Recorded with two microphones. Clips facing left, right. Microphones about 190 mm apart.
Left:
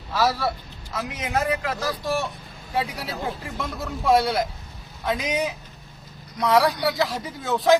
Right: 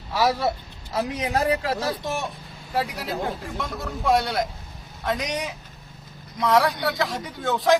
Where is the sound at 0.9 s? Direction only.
35° right (ahead or behind).